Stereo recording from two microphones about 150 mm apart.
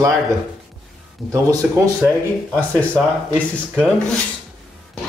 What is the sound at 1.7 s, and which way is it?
Speech, 15° right (ahead or behind).